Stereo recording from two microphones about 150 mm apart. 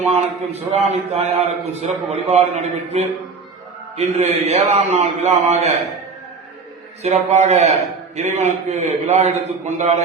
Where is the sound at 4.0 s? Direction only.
45° right (ahead or behind).